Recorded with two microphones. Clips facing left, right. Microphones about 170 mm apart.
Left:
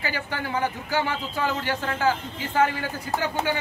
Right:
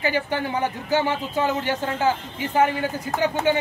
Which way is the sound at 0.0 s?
20° right (ahead or behind).